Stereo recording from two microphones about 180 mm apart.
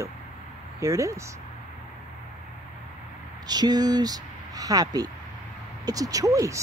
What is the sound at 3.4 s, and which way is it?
Speech, 20° right (ahead or behind).